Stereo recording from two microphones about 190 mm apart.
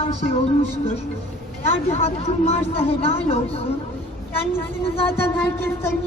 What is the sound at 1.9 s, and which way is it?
A woman's voice, 35° left (ahead or behind).